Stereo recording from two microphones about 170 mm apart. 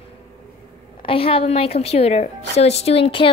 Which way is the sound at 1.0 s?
35° left (ahead or behind).